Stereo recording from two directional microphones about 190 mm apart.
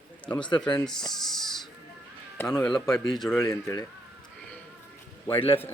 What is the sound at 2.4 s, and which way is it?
Speech, 5° left (ahead or behind).